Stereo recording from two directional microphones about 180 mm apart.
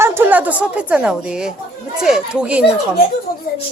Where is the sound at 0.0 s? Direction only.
15° right (ahead or behind).